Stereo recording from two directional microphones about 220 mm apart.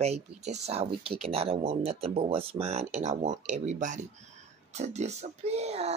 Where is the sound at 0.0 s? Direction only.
30° right (ahead or behind).